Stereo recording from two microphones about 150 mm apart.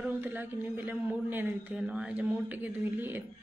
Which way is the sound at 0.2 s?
15° right (ahead or behind).